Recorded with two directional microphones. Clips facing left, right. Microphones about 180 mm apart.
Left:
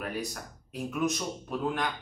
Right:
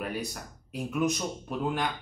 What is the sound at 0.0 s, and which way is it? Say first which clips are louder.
Speech: right 1 dB; centre (ahead or behind).